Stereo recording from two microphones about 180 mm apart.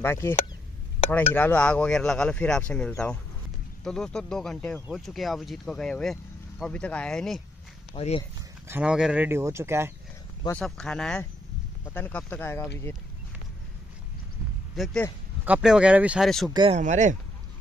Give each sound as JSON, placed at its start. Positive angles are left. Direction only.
{"t": 0.0, "sound": "speech", "side_deg": 15}
{"t": 7.9, "sound": "speech", "side_deg": 30}
{"t": 8.6, "sound": "speech", "side_deg": -5}
{"t": 10.5, "sound": "speech", "side_deg": 5}
{"t": 14.8, "sound": "speech", "side_deg": 0}
{"t": 16.7, "sound": "speech", "side_deg": -40}